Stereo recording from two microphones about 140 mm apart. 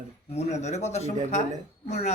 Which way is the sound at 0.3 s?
50° left (ahead or behind).